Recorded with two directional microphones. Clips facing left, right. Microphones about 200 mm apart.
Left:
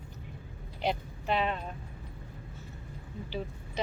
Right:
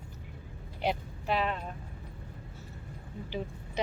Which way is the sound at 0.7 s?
10° right (ahead or behind).